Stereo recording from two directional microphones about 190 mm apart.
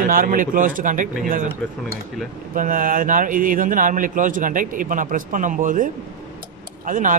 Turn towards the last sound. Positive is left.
turn(degrees=-45)  # may be behind; listen again after turning